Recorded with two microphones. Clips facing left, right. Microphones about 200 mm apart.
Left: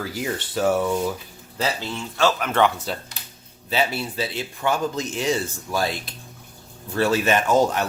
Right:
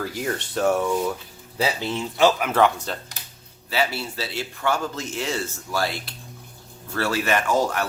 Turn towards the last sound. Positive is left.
turn(degrees=20)  # may be behind; listen again after turning